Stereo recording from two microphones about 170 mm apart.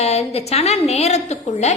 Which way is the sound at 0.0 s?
40° left (ahead or behind).